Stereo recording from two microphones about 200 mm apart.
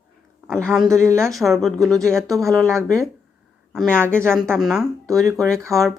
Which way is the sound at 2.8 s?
15° right (ahead or behind).